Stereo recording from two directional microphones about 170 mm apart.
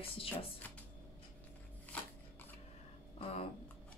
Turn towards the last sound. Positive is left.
turn(degrees=40)  # may be behind; listen again after turning